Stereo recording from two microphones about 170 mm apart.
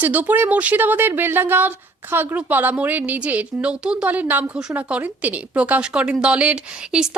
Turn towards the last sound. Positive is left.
turn(degrees=-5)  # may be behind; listen again after turning